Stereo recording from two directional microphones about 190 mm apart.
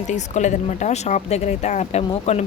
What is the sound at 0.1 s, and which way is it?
Speech, 40° left (ahead or behind).